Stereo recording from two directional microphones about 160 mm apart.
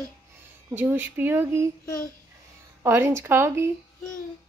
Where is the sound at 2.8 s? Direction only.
15° right (ahead or behind).